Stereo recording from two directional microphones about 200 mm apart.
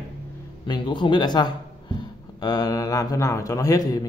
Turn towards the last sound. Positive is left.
turn(degrees=15)  # may be behind; listen again after turning